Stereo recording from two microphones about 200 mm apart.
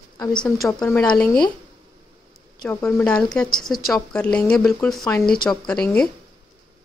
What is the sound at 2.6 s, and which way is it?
A woman's voice, 5° left (ahead or behind).